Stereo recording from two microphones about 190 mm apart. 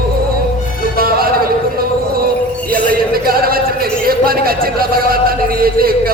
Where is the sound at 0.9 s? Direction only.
50° right (ahead or behind).